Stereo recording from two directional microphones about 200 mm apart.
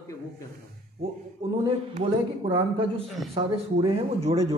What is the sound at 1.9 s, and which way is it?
A man's voice, 30° right (ahead or behind).